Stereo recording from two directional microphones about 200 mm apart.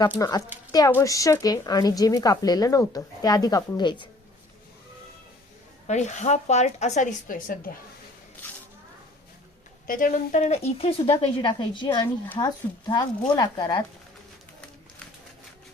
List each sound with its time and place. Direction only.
0.0 s speech: 20° left (ahead or behind)
5.9 s a woman's voice: 35° left (ahead or behind)
8.4 s snake: 10° left (ahead or behind)
9.8 s a woman's voice: 45° left (ahead or behind); by 13.8 s 20° left (ahead or behind)